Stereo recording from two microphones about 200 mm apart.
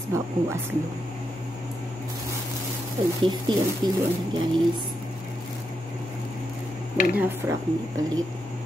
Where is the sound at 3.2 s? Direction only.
25° right (ahead or behind).